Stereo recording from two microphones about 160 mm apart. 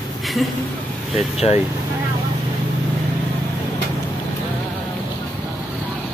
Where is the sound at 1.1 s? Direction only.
40° left (ahead or behind).